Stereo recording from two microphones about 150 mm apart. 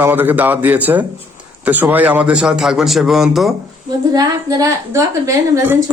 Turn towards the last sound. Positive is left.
turn(degrees=-15)  # may be behind; listen again after turning